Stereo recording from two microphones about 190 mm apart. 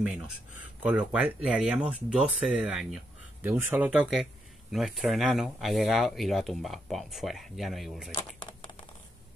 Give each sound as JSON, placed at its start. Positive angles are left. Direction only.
{"t": 0.8, "sound": "speech", "side_deg": -5}